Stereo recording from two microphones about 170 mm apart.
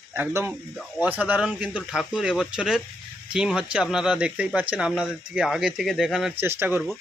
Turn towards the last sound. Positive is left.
turn(degrees=-15)  # may be behind; listen again after turning